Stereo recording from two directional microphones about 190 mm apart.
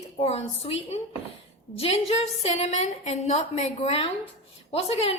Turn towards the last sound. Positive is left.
turn(degrees=30)  # may be behind; listen again after turning